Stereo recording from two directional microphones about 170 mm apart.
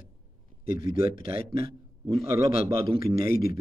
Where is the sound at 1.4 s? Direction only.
60° left (ahead or behind).